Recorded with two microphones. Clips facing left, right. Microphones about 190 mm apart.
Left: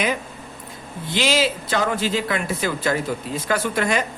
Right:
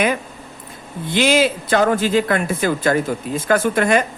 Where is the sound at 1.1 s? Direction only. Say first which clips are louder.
Right 5 dB; 55° right (ahead or behind).